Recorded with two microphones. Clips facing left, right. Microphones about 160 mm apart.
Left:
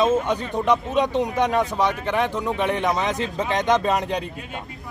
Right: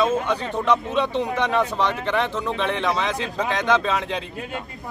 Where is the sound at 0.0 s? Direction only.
15° left (ahead or behind).